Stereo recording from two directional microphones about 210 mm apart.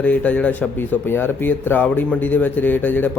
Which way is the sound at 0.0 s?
5° left (ahead or behind).